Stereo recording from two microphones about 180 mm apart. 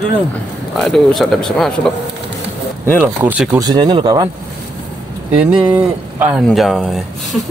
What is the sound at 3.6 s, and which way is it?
Speech, 25° right (ahead or behind).